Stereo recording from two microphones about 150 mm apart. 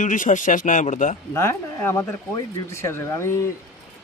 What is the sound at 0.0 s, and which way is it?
Speech, 60° left (ahead or behind).